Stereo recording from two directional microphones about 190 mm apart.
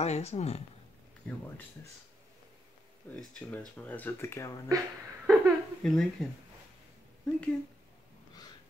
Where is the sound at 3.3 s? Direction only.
5° left (ahead or behind).